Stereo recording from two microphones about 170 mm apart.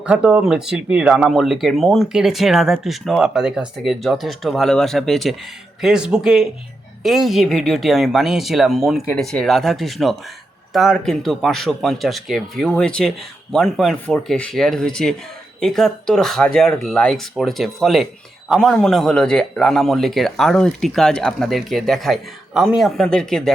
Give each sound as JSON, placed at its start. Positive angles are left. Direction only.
{"t": 0.0, "sound": "speech", "side_deg": -5}